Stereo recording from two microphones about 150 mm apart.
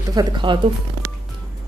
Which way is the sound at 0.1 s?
30° right (ahead or behind).